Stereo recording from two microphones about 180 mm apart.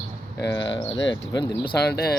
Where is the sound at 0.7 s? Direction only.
90° left.